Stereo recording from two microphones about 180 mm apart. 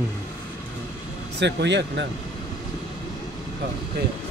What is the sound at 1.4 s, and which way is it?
Speech, 75° right (ahead or behind).